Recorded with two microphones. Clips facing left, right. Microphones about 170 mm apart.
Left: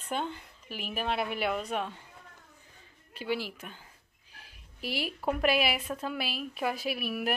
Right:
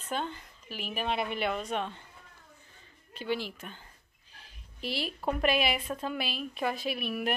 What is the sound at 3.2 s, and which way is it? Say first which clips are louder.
A woman's voice: even; 10° left (ahead or behind).